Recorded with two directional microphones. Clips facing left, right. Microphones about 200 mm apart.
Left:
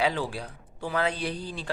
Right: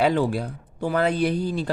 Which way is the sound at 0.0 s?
50° right (ahead or behind).